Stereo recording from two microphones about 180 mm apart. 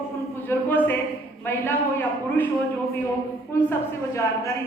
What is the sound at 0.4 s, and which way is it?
A woman's voice, 10° left (ahead or behind).